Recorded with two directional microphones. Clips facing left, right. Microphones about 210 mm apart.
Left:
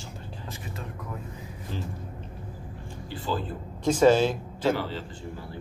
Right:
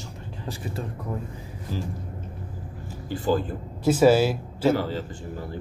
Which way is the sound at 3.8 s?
5° right (ahead or behind).